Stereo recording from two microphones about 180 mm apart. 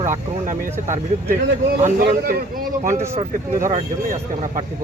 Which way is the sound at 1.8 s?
55° right (ahead or behind).